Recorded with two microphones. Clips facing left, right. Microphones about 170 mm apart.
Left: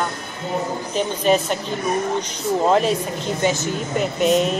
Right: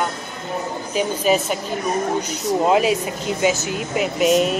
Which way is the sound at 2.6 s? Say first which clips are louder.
Even; 5° right (ahead or behind).